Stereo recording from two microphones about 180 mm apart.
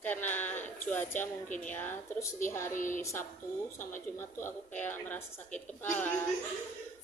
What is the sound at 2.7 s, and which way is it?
Music, 45° left (ahead or behind).